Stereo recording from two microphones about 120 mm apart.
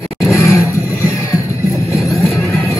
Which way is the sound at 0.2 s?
25° left (ahead or behind).